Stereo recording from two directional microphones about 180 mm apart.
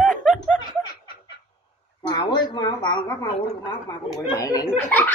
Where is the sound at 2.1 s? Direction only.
25° left (ahead or behind).